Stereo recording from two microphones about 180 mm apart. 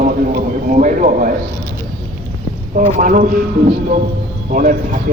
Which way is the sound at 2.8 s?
45° right (ahead or behind).